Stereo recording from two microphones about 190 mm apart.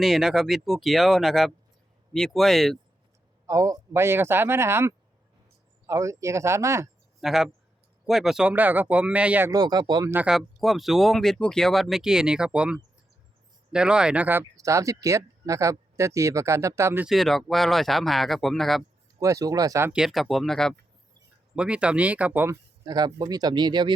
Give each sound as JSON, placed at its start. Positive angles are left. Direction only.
{"t": 0.0, "sound": "speech", "side_deg": 0}
{"t": 3.4, "sound": "speech", "side_deg": -15}
{"t": 7.2, "sound": "speech", "side_deg": 0}
{"t": 9.5, "sound": "speech", "side_deg": -20}
{"t": 10.2, "sound": "speech", "side_deg": -5}
{"t": 19.2, "sound": "speech", "side_deg": -15}
{"t": 19.9, "sound": "speech", "side_deg": 0}
{"t": 22.9, "sound": "speech", "side_deg": -20}